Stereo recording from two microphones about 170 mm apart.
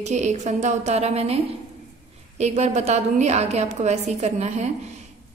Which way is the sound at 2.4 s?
40° right (ahead or behind).